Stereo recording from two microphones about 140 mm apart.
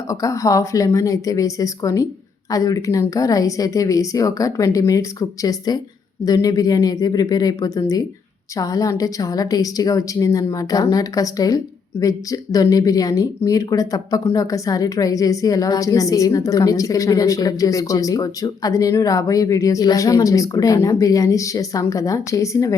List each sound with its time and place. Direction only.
0.1 s a woman's voice: 25° left (ahead or behind)